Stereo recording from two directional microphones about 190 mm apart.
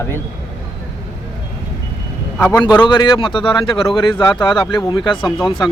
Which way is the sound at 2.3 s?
10° left (ahead or behind).